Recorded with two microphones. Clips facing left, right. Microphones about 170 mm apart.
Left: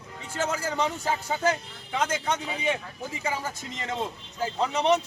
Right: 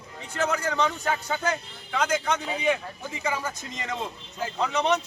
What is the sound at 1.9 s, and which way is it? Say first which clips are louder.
Speech: right 2 dB; 25° left (ahead or behind).